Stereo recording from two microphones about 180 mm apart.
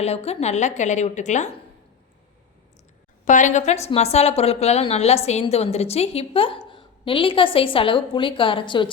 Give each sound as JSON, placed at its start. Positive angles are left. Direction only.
{"t": 0.0, "sound": "a woman's voice", "side_deg": 35}
{"t": 3.2, "sound": "a woman's voice", "side_deg": 45}